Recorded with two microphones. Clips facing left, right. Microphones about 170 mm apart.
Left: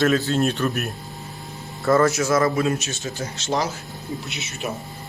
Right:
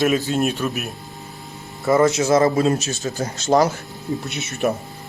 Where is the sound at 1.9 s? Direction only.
20° right (ahead or behind); by 3.7 s 45° right (ahead or behind).